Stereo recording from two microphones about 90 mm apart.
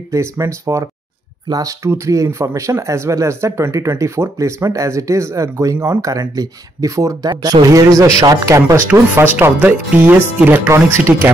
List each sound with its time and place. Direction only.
0.1 s speech: 30° right (ahead or behind)
9.1 s speech: 25° right (ahead or behind)